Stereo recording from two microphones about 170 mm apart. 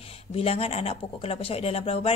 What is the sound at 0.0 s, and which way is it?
Speech, 35° left (ahead or behind).